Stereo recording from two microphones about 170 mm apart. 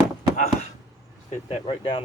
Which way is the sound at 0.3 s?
45° left (ahead or behind).